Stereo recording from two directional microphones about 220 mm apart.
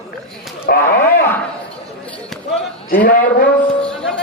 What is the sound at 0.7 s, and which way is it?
Speech, 45° left (ahead or behind).